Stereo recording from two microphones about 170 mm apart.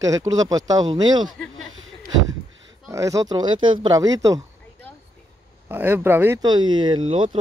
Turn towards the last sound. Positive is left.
turn(degrees=-30)  # may be behind; listen again after turning